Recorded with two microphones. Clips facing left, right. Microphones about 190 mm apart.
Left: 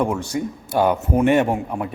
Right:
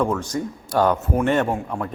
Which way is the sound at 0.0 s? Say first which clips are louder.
Left 1 dB; 15° left (ahead or behind).